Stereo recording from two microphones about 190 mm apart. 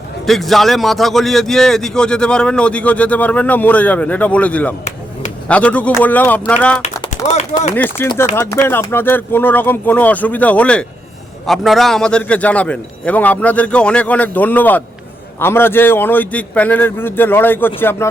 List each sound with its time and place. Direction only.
0.3 s a man's voice: centre (ahead or behind)
7.0 s a sound: 25° left (ahead or behind)
7.8 s a man's voice: 5° left (ahead or behind)